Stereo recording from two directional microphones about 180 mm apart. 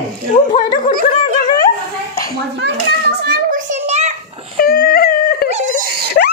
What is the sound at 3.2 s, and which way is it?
Child singing, 65° right (ahead or behind).